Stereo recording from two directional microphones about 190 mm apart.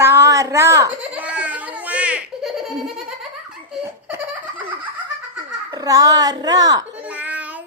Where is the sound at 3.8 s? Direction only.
15° right (ahead or behind).